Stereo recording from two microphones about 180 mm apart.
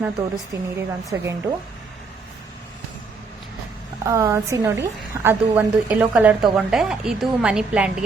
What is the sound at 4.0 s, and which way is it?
A woman's voice, 15° right (ahead or behind).